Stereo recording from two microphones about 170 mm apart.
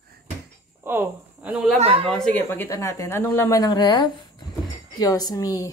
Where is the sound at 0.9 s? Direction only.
10° right (ahead or behind).